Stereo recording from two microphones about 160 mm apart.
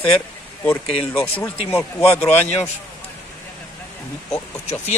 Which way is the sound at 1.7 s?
10° left (ahead or behind).